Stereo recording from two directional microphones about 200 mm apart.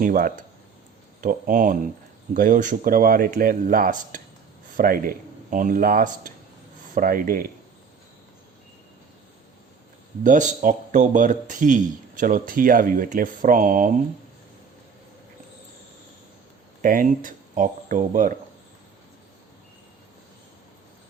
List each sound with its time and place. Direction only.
0.0 s speech: 45° right (ahead or behind)
10.2 s speech: 40° right (ahead or behind)
16.8 s speech: 45° right (ahead or behind)